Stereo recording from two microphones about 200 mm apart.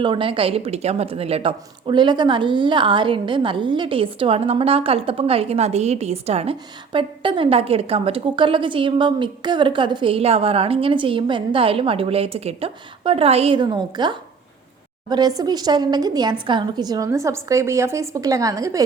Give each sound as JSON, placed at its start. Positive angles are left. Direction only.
{"t": 0.0, "sound": "a woman's voice", "side_deg": -25}
{"t": 15.4, "sound": "a woman's voice", "side_deg": -20}